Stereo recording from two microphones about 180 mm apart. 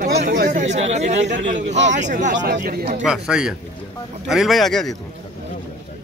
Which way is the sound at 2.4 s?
70° right (ahead or behind).